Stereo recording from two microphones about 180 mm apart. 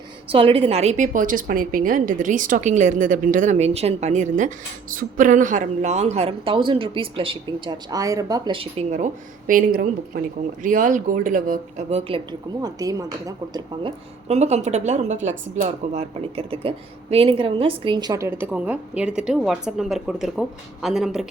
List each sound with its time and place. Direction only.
0.3 s a woman's voice: 30° right (ahead or behind)
9.5 s speech: 50° right (ahead or behind); by 12.2 s 35° right (ahead or behind)
12.6 s speech: 20° right (ahead or behind)
14.3 s speech: 40° right (ahead or behind); by 21.2 s centre (ahead or behind)